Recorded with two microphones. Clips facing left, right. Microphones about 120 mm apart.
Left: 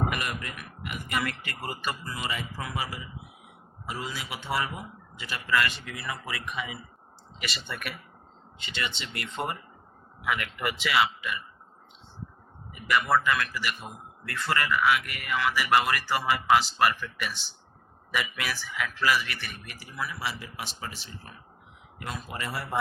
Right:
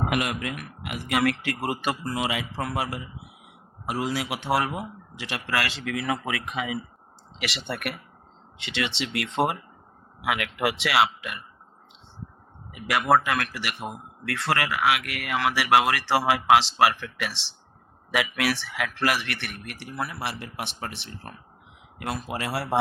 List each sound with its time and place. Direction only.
0.1 s speech: 70° right (ahead or behind)
3.8 s speech: 70° right (ahead or behind); by 6.7 s 90° right
7.3 s speech: 75° right (ahead or behind)
8.5 s speech: 80° right
12.7 s speech: 75° right (ahead or behind)